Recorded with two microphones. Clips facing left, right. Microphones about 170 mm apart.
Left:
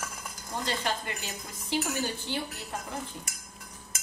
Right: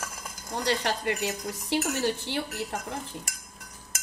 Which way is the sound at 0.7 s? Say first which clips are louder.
Right 6 dB; 70° right (ahead or behind).